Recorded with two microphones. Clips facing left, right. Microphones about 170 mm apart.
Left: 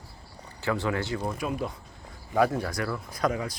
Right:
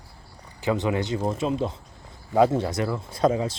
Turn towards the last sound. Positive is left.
turn(degrees=-25)  # may be behind; listen again after turning